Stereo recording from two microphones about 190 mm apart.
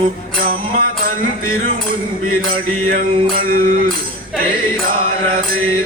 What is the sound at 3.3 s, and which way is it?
Music, 50° right (ahead or behind).